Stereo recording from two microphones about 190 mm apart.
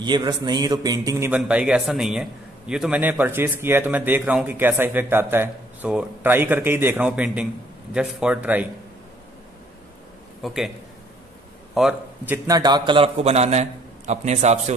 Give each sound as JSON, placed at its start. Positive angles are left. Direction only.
{"t": 0.0, "sound": "a man's voice", "side_deg": -20}
{"t": 10.4, "sound": "a man's voice", "side_deg": 0}
{"t": 11.7, "sound": "a man's voice", "side_deg": 0}
{"t": 12.4, "sound": "a man's voice", "side_deg": -20}